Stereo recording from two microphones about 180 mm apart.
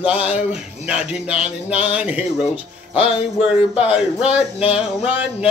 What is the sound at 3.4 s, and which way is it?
Speech, 5° right (ahead or behind).